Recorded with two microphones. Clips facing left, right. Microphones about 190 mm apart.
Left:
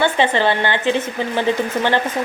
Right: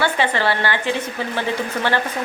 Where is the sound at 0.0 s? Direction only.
20° left (ahead or behind).